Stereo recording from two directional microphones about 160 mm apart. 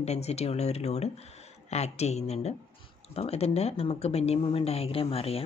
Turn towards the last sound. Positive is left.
turn(degrees=40)  # may be behind; listen again after turning